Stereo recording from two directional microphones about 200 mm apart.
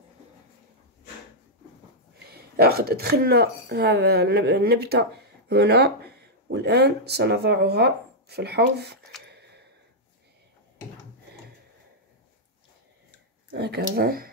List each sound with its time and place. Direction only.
2.2 s speech: 50° right (ahead or behind)
9.3 s a sound: 55° right (ahead or behind)
13.5 s speech: 55° right (ahead or behind)